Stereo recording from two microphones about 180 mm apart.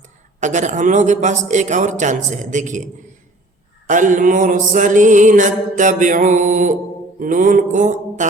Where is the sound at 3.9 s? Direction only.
45° right (ahead or behind).